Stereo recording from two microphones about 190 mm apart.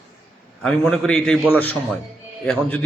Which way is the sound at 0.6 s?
5° left (ahead or behind).